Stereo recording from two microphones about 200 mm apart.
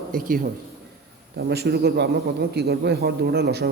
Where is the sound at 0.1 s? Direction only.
45° right (ahead or behind).